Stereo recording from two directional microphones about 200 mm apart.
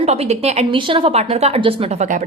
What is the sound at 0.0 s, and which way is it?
A woman's voice, 30° right (ahead or behind).